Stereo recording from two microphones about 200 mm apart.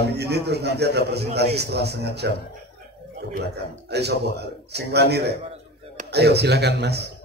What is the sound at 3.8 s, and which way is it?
A man's voice, 55° right (ahead or behind).